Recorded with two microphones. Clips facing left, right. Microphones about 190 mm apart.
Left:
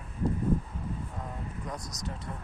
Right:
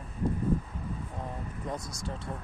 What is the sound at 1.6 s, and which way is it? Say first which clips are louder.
Speech: right 5 dB; 25° right (ahead or behind).